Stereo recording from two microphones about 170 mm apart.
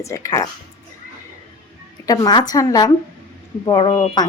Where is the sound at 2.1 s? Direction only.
20° left (ahead or behind).